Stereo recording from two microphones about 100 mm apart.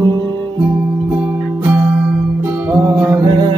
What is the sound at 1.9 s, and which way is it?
Music, 15° right (ahead or behind).